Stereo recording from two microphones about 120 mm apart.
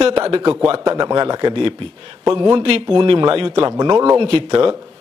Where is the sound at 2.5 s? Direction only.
45° right (ahead or behind).